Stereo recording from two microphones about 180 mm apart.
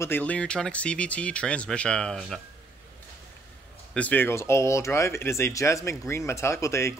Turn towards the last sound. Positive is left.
turn(degrees=15)  # may be behind; listen again after turning